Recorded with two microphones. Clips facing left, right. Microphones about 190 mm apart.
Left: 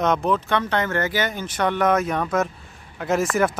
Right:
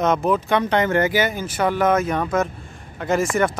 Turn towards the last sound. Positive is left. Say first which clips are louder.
# right 1 dB
turn(degrees=0)  # may be behind; listen again after turning